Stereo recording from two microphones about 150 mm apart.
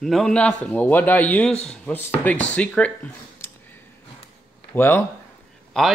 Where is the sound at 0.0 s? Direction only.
5° left (ahead or behind).